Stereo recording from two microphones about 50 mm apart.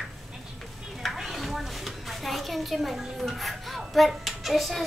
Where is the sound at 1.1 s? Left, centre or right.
Centre.